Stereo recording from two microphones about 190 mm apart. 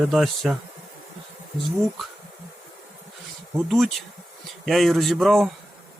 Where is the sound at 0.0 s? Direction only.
Centre (ahead or behind).